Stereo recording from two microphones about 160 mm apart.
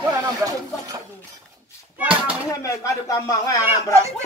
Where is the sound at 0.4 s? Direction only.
20° right (ahead or behind).